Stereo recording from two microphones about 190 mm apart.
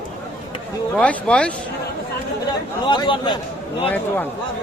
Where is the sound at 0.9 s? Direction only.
5° left (ahead or behind).